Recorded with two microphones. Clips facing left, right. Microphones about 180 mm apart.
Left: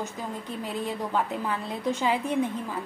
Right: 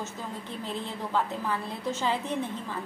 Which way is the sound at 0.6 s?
15° left (ahead or behind).